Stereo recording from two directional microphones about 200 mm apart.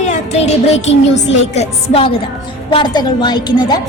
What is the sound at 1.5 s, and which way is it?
A woman's voice, 30° left (ahead or behind).